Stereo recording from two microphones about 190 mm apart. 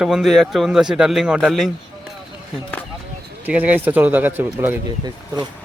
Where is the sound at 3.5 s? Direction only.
10° right (ahead or behind).